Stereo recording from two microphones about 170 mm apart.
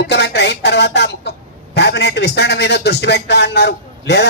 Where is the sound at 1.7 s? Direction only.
85° left.